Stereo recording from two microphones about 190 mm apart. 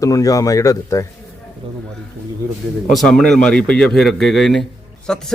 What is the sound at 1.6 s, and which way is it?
Speech, 30° right (ahead or behind).